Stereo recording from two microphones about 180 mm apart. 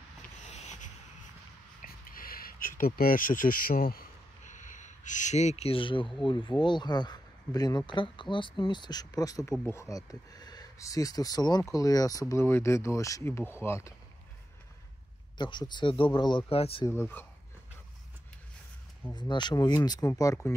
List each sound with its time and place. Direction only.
0.5 s a sound: 40° left (ahead or behind)
1.8 s a sound: 50° left (ahead or behind)
2.8 s speech: 50° left (ahead or behind); by 13.9 s 15° left (ahead or behind)
15.3 s speech: 25° left (ahead or behind)
16.8 s speech: 15° left (ahead or behind)
19.1 s speech: 25° left (ahead or behind)